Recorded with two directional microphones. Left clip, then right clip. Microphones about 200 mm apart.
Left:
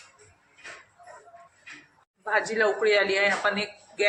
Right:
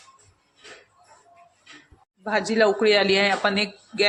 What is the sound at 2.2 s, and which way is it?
Speech, 45° right (ahead or behind).